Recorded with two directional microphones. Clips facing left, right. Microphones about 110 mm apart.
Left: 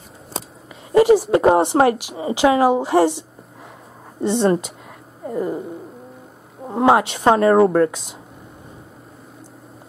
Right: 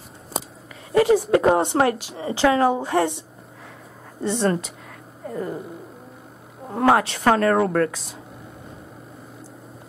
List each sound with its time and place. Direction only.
1.3 s a woman's voice: 25° left (ahead or behind)
1.9 s a woman's voice: 10° left (ahead or behind); by 4.7 s 25° left (ahead or behind)
5.2 s a woman's voice: 10° left (ahead or behind)
6.7 s a woman's voice: 20° left (ahead or behind)